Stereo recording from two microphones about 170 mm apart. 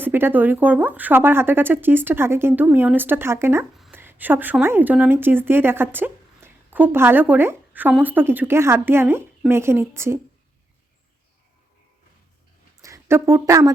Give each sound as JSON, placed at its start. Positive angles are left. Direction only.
{"t": 0.0, "sound": "a woman's voice", "side_deg": -10}
{"t": 12.8, "sound": "a woman's voice", "side_deg": -15}